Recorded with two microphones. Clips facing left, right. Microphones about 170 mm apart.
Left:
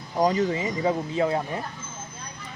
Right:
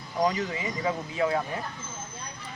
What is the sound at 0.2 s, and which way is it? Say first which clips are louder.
Speech: left 5 dB; 35° left (ahead or behind).